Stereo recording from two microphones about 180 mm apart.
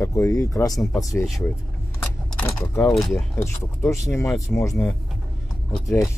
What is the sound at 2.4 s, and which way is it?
Speech, 5° left (ahead or behind).